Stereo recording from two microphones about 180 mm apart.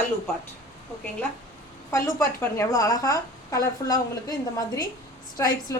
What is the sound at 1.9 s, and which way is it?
A woman's voice, 15° left (ahead or behind).